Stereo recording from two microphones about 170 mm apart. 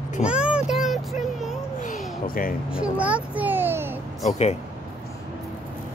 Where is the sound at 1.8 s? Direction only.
55° left (ahead or behind).